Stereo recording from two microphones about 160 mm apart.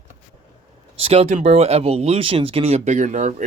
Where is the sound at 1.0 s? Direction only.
40° right (ahead or behind).